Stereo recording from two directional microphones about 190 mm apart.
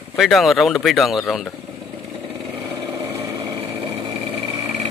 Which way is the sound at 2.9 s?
15° right (ahead or behind).